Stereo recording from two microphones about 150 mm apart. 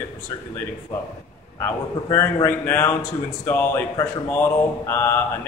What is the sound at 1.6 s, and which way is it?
Speech, 15° left (ahead or behind).